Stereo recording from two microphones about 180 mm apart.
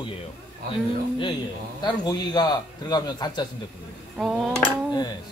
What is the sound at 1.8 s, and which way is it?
A man's voice, 25° left (ahead or behind).